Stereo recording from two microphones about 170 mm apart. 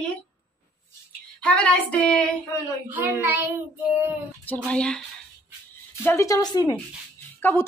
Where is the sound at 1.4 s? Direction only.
5° left (ahead or behind).